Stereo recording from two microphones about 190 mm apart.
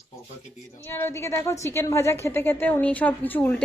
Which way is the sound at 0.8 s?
10° left (ahead or behind).